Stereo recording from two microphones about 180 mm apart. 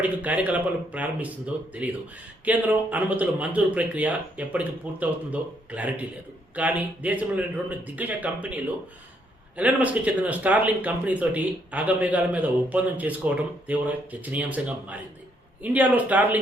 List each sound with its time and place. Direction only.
0.0 s speech: 10° right (ahead or behind)